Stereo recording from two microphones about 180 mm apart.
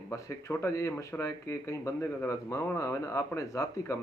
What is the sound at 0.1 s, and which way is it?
Speech, 15° left (ahead or behind).